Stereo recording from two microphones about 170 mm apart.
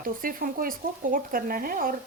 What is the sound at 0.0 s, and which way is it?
Speech, 55° right (ahead or behind).